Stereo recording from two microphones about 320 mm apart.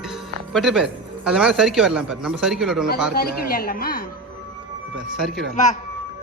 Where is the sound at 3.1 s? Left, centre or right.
Left.